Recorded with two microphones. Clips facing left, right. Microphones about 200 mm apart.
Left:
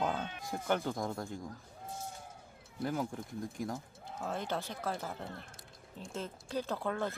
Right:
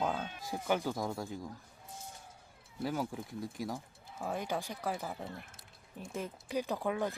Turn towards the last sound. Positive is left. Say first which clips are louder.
# right 1 dB
turn(degrees=-15)  # may be behind; listen again after turning